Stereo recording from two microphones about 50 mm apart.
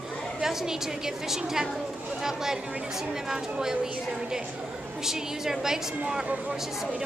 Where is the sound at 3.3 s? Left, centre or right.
Centre.